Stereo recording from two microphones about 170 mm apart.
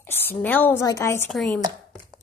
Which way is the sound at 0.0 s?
10° left (ahead or behind).